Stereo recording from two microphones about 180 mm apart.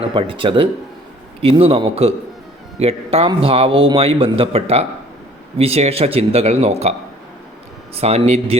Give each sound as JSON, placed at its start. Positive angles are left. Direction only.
{"t": 0.1, "sound": "a man's voice", "side_deg": -30}
{"t": 7.9, "sound": "a man's voice", "side_deg": -35}